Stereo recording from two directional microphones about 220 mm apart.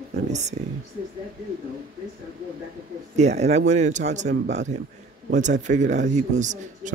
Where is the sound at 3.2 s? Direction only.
30° right (ahead or behind).